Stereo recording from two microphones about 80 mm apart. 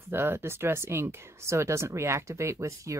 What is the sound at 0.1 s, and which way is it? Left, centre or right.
Speech, right.